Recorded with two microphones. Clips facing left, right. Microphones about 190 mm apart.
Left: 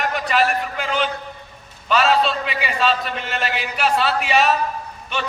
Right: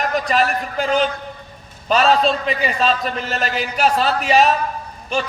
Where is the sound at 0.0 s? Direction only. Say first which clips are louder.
Right 1 dB; 40° right (ahead or behind).